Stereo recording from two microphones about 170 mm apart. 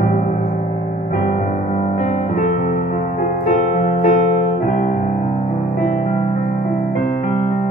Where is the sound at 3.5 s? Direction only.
50° left (ahead or behind).